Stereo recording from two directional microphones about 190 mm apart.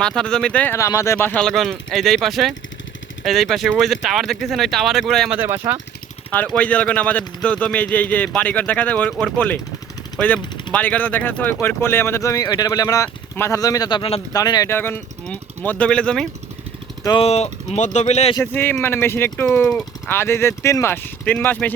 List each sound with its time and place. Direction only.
0.0 s speech: 5° left (ahead or behind)
5.4 s speech: 15° right (ahead or behind)
6.3 s speech: 5° left (ahead or behind)
17.0 s speech: 20° left (ahead or behind)
17.2 s speech: 35° left (ahead or behind)
18.3 s speech: 10° left (ahead or behind)